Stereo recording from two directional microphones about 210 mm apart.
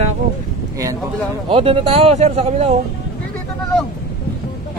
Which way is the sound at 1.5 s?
25° right (ahead or behind).